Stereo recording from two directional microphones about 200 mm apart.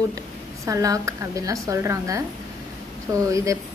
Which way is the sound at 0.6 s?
15° right (ahead or behind).